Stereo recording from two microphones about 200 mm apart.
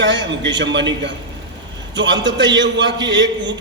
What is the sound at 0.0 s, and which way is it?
A man's voice, 65° right (ahead or behind).